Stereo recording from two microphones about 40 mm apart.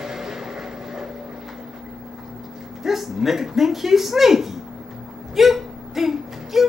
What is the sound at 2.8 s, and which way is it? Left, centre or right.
Speech, centre.